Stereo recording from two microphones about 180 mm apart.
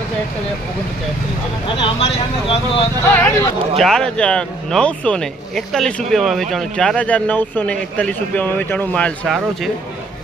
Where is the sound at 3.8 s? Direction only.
5° left (ahead or behind).